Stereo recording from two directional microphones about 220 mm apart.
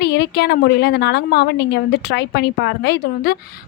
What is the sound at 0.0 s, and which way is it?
A woman's voice, 50° left (ahead or behind).